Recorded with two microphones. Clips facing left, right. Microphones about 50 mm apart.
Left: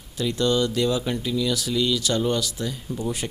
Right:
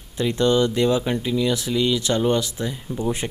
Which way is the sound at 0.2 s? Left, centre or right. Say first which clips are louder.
Right 3 dB; right.